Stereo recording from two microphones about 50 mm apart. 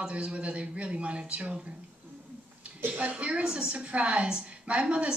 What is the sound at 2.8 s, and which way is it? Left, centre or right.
Speech, right.